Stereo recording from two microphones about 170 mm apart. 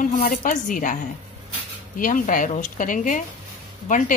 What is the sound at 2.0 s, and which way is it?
Speech, 50° left (ahead or behind).